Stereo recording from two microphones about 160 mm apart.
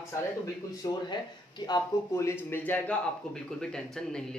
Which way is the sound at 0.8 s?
25° left (ahead or behind).